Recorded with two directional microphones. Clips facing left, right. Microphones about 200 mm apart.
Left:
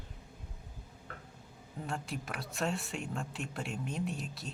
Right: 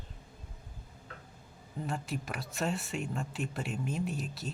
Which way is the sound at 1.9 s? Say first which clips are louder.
Right 2 dB; centre (ahead or behind).